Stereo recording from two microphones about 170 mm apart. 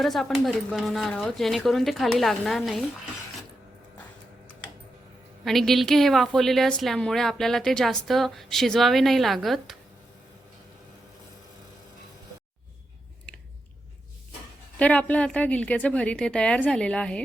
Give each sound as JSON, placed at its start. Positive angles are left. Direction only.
{"t": 0.0, "sound": "a woman's voice", "side_deg": 0}
{"t": 5.5, "sound": "a woman's voice", "side_deg": 0}
{"t": 14.8, "sound": "a woman's voice", "side_deg": 10}